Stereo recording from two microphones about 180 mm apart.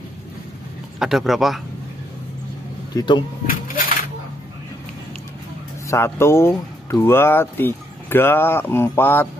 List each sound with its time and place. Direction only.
0.9 s speech: centre (ahead or behind)
2.9 s speech: 25° left (ahead or behind)
3.4 s speech: 50° left (ahead or behind)
5.9 s speech: 15° left (ahead or behind)